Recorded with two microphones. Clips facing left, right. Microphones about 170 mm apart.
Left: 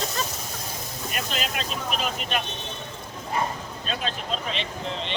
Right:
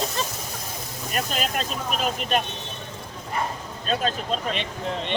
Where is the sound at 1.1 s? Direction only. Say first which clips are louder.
Right 4 dB; 45° right (ahead or behind).